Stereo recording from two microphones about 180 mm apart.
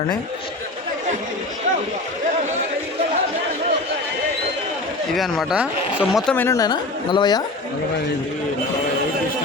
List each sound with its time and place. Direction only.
5.1 s speech: centre (ahead or behind)
6.3 s a woman's voice: 15° left (ahead or behind)